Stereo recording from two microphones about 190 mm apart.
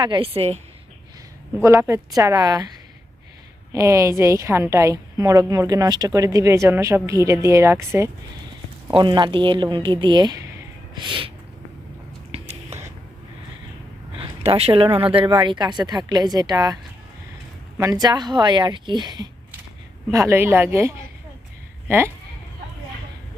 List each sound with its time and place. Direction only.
0.0 s a woman's voice: 25° right (ahead or behind)
1.8 s speech: 15° right (ahead or behind)
3.7 s a woman's voice: 15° right (ahead or behind)
12.3 s whispering: 35° right (ahead or behind)
14.2 s speech: 30° right (ahead or behind)
17.7 s a woman's voice: 20° right (ahead or behind)